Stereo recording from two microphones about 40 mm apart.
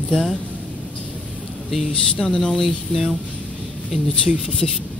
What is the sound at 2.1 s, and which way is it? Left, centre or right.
Speech, left.